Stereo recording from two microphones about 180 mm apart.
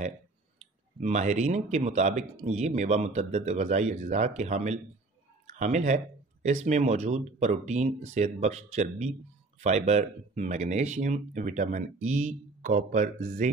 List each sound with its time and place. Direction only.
1.0 s speech: 40° right (ahead or behind)